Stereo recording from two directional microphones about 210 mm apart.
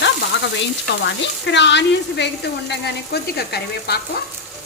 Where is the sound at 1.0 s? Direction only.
55° left (ahead or behind).